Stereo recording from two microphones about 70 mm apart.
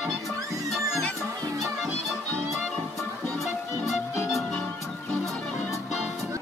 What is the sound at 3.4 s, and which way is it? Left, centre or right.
Music, centre.